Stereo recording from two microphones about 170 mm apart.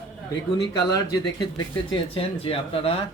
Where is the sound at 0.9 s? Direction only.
25° left (ahead or behind).